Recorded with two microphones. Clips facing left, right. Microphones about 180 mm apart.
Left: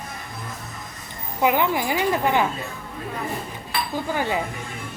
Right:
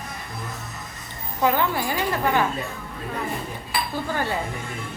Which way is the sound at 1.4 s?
15° left (ahead or behind).